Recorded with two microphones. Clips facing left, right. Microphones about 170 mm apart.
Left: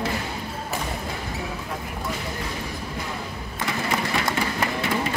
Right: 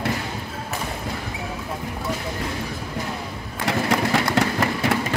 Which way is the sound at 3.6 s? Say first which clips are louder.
Right 5 dB; 75° right (ahead or behind).